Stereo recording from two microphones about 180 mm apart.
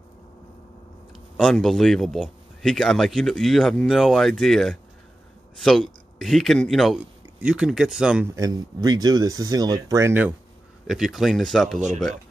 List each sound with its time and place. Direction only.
1.3 s speech: centre (ahead or behind)
8.4 s speech: 20° right (ahead or behind)
10.9 s speech: centre (ahead or behind)